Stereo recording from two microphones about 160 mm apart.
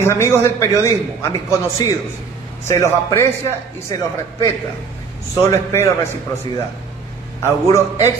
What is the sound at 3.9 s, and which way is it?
Speech, 25° left (ahead or behind).